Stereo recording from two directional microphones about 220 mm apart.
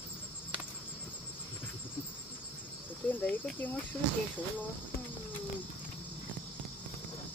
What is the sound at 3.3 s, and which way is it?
Speech, 5° left (ahead or behind).